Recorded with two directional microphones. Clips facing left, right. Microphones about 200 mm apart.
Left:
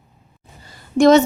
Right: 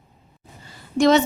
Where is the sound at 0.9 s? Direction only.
50° left (ahead or behind).